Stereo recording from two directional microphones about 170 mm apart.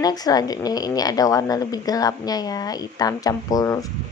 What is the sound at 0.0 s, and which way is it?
A woman's voice, 20° left (ahead or behind).